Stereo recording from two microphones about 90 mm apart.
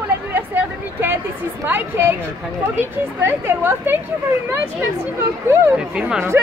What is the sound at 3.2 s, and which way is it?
Speech, 25° right (ahead or behind).